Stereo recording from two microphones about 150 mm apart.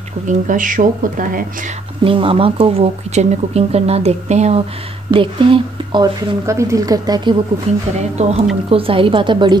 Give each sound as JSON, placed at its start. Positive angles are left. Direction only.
{"t": 0.3, "sound": "speech", "side_deg": -60}
{"t": 2.0, "sound": "speech", "side_deg": -35}
{"t": 6.4, "sound": "speech", "side_deg": -20}
{"t": 7.7, "sound": "a woman's voice", "side_deg": -45}